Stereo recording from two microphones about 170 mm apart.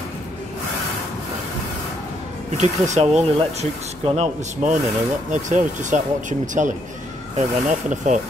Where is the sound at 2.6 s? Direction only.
45° right (ahead or behind).